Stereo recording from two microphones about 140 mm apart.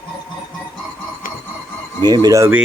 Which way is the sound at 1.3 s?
75° left (ahead or behind).